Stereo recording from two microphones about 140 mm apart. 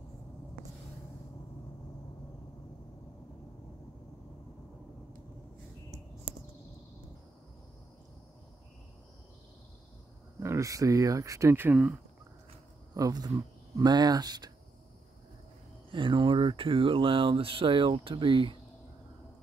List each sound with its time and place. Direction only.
10.4 s speech: 20° right (ahead or behind)
12.9 s speech: 25° right (ahead or behind)
15.9 s speech: 35° right (ahead or behind)